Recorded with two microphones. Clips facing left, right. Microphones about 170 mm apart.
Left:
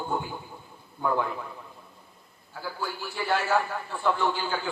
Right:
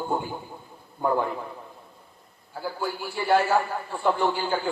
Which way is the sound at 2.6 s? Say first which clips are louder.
Right 4 dB; 35° right (ahead or behind).